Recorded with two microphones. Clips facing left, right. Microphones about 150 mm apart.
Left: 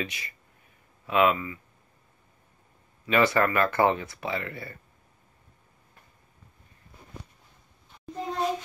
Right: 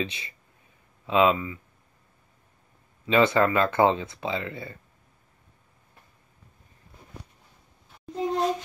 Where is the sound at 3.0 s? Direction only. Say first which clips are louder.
Right 2 dB; 20° right (ahead or behind).